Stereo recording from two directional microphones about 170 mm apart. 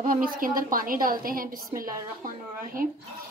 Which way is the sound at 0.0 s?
55° right (ahead or behind).